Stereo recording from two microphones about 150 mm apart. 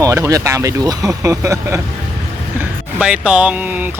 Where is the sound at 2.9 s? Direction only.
5° right (ahead or behind).